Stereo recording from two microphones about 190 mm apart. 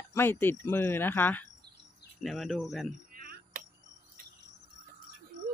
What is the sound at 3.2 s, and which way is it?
Cricket, 50° right (ahead or behind).